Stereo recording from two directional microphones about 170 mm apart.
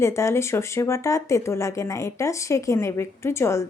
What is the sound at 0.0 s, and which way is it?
A woman's voice, 15° left (ahead or behind).